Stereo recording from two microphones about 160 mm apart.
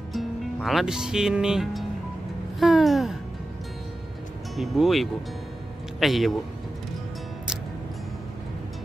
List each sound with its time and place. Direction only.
0.1 s speech: centre (ahead or behind)
2.6 s music: centre (ahead or behind)
4.6 s music: centre (ahead or behind)
5.9 s speech: centre (ahead or behind)